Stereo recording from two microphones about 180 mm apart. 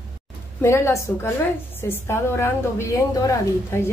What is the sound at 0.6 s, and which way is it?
A woman's voice, 15° left (ahead or behind).